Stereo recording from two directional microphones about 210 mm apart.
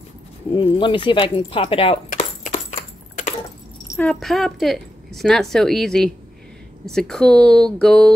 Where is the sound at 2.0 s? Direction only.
35° left (ahead or behind).